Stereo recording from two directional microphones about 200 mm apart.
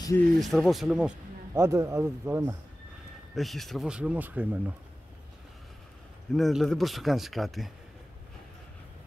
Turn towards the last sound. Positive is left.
turn(degrees=0)  # may be behind; listen again after turning